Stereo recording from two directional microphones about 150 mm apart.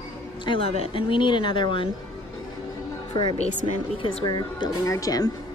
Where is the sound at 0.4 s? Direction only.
35° left (ahead or behind).